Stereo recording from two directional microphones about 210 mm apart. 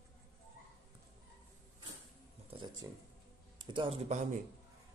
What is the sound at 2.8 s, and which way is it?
Speech, 15° right (ahead or behind).